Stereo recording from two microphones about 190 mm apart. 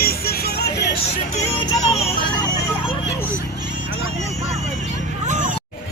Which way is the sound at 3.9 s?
35° right (ahead or behind).